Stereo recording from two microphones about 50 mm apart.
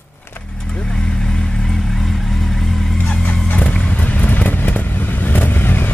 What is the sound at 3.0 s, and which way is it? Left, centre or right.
Vehicle, left.